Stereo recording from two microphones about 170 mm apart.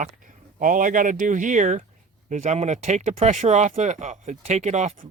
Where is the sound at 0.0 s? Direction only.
50° right (ahead or behind).